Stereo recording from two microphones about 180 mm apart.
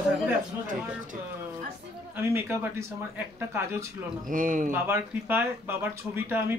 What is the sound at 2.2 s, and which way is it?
A woman's voice, 15° right (ahead or behind).